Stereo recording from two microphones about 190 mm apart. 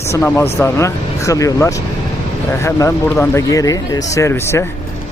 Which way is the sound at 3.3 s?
20° left (ahead or behind).